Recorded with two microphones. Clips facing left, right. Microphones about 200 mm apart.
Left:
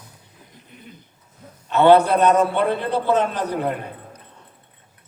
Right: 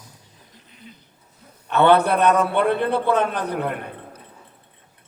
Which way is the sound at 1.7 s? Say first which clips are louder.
Left 2 dB; 60° right (ahead or behind).